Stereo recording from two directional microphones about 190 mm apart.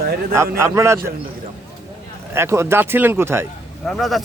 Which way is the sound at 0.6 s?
15° right (ahead or behind).